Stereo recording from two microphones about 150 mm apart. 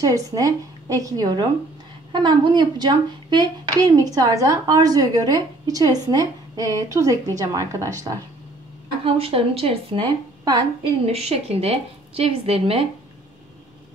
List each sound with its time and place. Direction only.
0.0 s speech: 25° right (ahead or behind)
9.0 s a woman's voice: 40° right (ahead or behind)
11.1 s a woman's voice: 40° right (ahead or behind)